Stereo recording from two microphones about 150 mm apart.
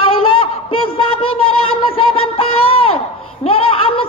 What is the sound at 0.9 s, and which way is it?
Music, 35° left (ahead or behind).